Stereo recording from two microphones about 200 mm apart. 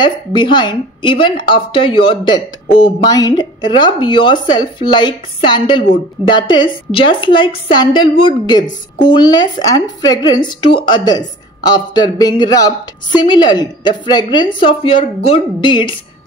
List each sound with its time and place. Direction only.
0.0 s speech: 25° left (ahead or behind)